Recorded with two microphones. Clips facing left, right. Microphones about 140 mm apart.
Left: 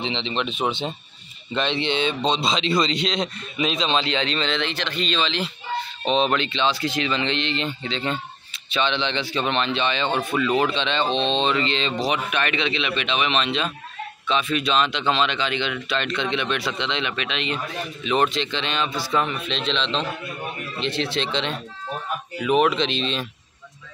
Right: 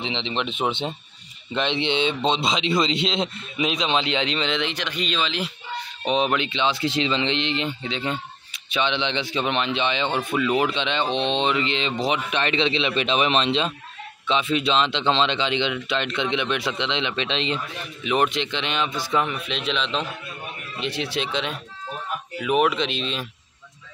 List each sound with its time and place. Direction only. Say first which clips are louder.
0.0 s a man's voice: left 1 dB; 15° right (ahead or behind)
18.0 s a man's voice: even; 15° right (ahead or behind)